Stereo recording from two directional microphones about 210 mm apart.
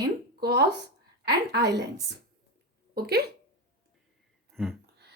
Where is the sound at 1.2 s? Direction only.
50° right (ahead or behind).